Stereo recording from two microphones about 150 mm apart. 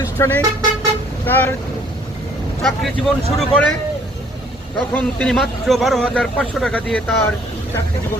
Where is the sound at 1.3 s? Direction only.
15° left (ahead or behind).